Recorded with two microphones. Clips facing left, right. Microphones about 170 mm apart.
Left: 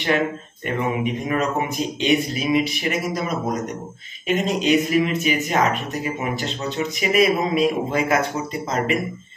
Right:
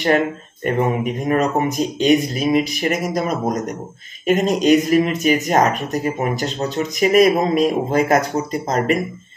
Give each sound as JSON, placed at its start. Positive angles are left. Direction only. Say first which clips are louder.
{"t": 0.7, "sound": "speech", "louder": "right 4 dB", "side_deg": -45}